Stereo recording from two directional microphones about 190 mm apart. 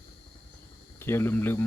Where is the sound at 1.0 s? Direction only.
10° left (ahead or behind).